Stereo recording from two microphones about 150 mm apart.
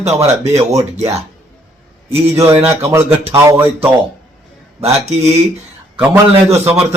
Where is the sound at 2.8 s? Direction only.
15° right (ahead or behind).